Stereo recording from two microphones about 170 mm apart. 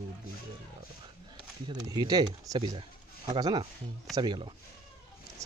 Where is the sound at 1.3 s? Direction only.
25° right (ahead or behind).